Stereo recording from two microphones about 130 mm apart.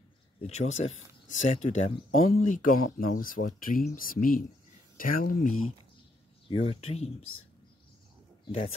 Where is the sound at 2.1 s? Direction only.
90° left.